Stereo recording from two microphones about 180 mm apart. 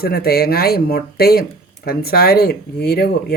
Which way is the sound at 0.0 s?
60° left (ahead or behind).